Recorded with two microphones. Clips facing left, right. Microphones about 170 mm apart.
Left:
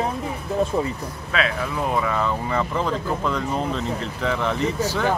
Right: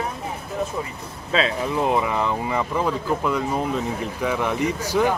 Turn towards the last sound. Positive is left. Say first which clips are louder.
# right 1 dB
turn(degrees=-10)  # may be behind; listen again after turning